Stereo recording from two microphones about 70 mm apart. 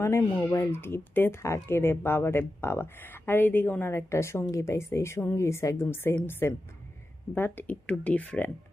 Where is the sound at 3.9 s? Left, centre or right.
Left.